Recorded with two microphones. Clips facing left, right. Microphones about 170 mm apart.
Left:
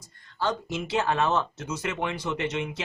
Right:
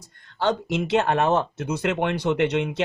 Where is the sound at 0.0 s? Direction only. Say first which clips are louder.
Right 5 dB; 65° right (ahead or behind).